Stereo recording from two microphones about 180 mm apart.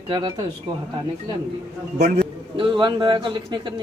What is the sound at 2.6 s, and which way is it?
Speech, 25° right (ahead or behind).